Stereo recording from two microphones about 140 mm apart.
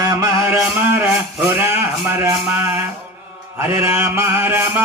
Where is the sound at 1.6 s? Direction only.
20° right (ahead or behind).